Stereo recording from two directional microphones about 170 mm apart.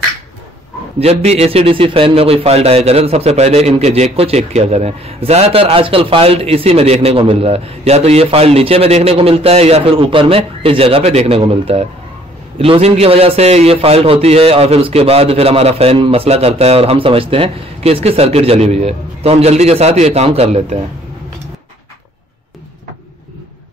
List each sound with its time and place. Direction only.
0.9 s a man's voice: 35° right (ahead or behind)